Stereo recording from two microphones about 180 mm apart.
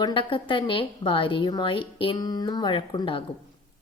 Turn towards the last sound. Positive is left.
turn(degrees=25)  # may be behind; listen again after turning